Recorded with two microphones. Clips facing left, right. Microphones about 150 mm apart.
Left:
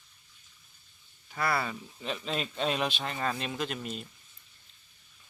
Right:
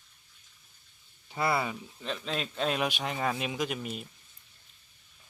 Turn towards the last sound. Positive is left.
turn(degrees=-5)  # may be behind; listen again after turning